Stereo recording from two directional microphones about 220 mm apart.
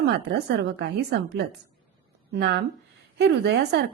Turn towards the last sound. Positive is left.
turn(degrees=-50)  # may be behind; listen again after turning